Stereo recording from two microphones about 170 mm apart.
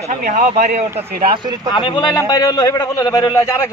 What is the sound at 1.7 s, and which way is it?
A man's voice, 30° left (ahead or behind).